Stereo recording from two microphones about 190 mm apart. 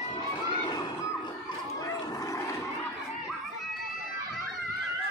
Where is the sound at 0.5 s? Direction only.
20° left (ahead or behind).